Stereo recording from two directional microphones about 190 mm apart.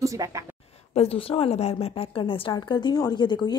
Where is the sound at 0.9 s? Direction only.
30° left (ahead or behind).